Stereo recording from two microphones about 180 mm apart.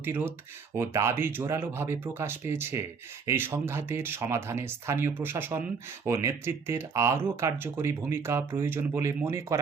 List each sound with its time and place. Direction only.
0.0 s speech: 10° right (ahead or behind)